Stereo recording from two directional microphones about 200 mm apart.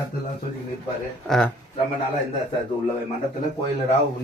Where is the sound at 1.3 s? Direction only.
Centre (ahead or behind).